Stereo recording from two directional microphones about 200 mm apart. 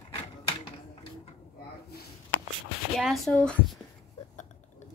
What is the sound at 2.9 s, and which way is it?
Speech, centre (ahead or behind).